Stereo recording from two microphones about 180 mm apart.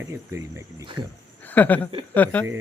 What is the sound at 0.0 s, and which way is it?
Speech, 15° right (ahead or behind).